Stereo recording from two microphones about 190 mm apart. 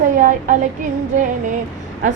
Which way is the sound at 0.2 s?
45° right (ahead or behind).